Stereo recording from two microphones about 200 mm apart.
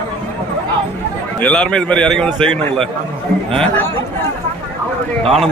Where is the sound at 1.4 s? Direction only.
5° left (ahead or behind).